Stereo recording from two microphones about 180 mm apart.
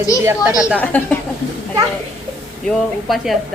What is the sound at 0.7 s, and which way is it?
Speech, 10° left (ahead or behind).